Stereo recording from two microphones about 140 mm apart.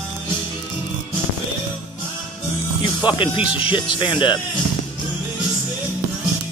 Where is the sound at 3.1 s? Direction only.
40° left (ahead or behind).